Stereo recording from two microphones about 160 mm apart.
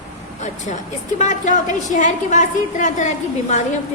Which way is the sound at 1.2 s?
50° left (ahead or behind).